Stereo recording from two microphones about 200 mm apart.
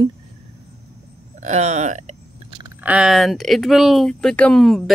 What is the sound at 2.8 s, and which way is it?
Speech, 5° right (ahead or behind).